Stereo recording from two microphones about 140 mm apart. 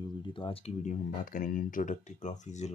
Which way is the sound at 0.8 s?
80° left.